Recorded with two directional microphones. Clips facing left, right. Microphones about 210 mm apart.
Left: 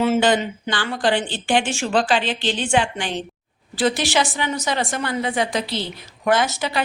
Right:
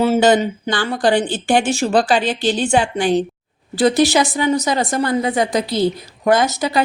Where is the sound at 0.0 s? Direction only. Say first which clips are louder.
Right 4 dB; 40° right (ahead or behind).